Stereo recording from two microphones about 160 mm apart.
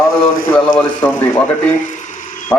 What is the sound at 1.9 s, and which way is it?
Mechanisms, 50° left (ahead or behind).